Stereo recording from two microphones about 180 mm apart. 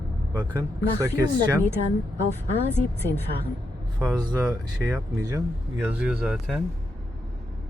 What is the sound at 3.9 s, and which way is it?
Speech, 20° right (ahead or behind).